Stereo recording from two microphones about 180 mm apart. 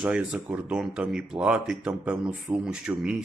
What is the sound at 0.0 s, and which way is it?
Speech, 5° right (ahead or behind).